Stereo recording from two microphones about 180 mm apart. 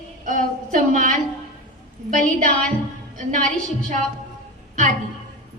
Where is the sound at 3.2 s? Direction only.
45° right (ahead or behind).